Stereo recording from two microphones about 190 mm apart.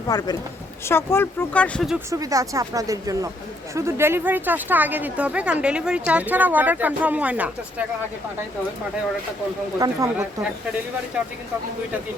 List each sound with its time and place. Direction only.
0.1 s speech: 20° left (ahead or behind); by 2.0 s 5° left (ahead or behind)
2.0 s speech: 15° right (ahead or behind)
9.7 s speech: 20° right (ahead or behind)